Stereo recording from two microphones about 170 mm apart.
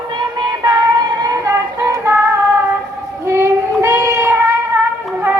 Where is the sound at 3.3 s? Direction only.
15° right (ahead or behind).